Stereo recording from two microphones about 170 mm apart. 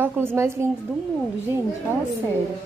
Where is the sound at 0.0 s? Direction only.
15° right (ahead or behind).